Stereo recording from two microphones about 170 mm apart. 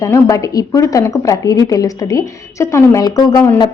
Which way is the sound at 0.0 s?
20° left (ahead or behind).